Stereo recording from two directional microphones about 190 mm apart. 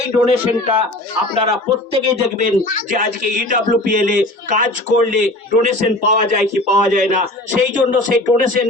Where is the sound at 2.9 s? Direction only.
40° right (ahead or behind).